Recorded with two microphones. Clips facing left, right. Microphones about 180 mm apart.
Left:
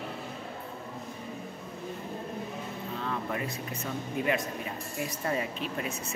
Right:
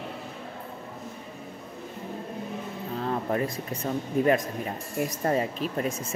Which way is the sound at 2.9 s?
40° right (ahead or behind).